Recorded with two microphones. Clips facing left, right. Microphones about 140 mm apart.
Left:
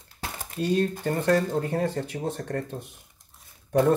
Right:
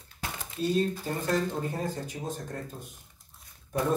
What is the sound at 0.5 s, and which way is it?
Speech, 65° left (ahead or behind).